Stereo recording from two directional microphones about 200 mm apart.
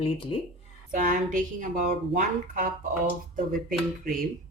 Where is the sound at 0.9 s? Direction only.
40° right (ahead or behind).